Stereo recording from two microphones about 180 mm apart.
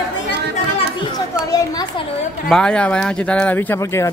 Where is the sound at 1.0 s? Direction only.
20° left (ahead or behind).